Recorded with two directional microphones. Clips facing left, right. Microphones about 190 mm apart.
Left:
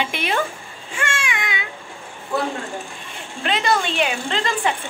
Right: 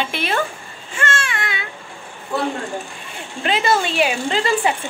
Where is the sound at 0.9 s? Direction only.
15° left (ahead or behind).